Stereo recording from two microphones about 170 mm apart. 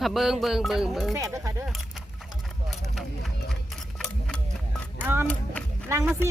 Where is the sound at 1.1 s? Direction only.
20° right (ahead or behind).